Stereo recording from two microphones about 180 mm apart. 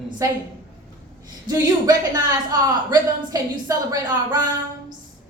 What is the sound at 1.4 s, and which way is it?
A man's voice, 20° right (ahead or behind).